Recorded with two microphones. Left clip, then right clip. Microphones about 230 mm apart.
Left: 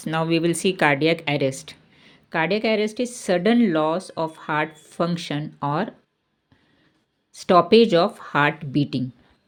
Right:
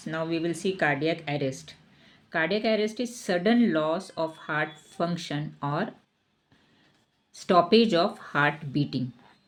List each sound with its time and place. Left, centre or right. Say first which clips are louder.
0.0 s speech: left 8 dB; left
7.3 s speech: left 6 dB; left